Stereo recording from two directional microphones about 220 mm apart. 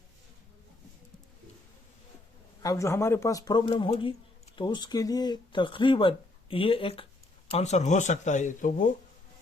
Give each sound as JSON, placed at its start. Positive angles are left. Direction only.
{"t": 2.6, "sound": "speech", "side_deg": 15}